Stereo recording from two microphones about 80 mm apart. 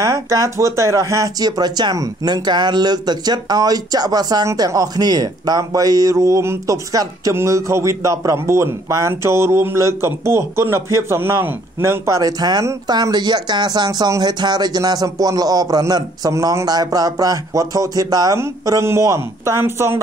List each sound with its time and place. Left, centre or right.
0.0 s a man's voice: right
12.2 s speech: right
18.7 s a man's voice: right